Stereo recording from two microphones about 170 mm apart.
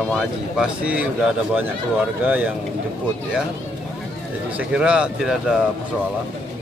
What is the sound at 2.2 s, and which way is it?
Speech, 5° right (ahead or behind).